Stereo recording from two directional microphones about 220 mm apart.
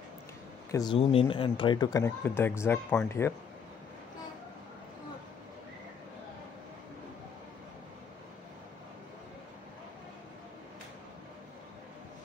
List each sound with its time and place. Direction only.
0.7 s speech: 15° left (ahead or behind)